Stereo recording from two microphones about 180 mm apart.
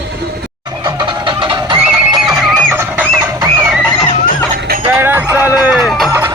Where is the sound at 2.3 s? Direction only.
15° right (ahead or behind).